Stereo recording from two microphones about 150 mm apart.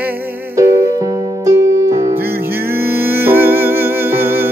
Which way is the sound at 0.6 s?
15° right (ahead or behind).